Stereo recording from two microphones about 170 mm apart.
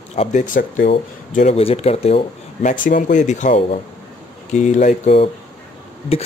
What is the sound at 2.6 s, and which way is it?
Speech, 50° left (ahead or behind).